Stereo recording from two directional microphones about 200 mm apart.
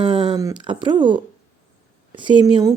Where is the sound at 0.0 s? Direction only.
25° right (ahead or behind).